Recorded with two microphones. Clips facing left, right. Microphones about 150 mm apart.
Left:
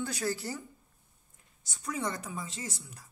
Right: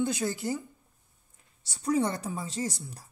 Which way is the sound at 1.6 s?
35° right (ahead or behind).